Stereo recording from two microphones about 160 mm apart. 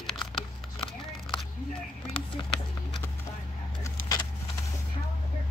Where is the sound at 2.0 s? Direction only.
35° left (ahead or behind).